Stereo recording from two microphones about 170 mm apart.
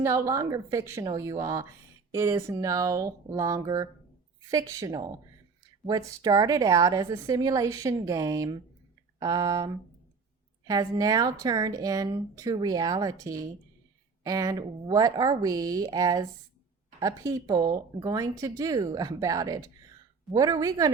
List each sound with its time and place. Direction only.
0.0 s a woman's voice: 15° right (ahead or behind)